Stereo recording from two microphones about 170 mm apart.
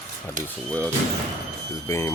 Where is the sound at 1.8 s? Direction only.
20° left (ahead or behind).